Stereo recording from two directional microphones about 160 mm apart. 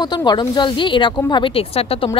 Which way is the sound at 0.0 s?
25° left (ahead or behind).